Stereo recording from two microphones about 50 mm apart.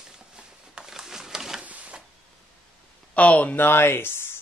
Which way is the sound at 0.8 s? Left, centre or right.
Centre.